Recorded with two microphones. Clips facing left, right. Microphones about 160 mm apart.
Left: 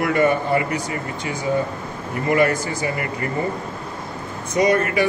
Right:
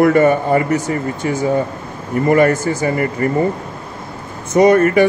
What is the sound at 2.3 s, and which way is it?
Speech, 45° right (ahead or behind).